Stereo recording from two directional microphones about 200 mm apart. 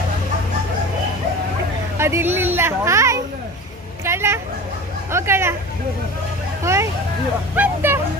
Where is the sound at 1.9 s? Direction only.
15° right (ahead or behind).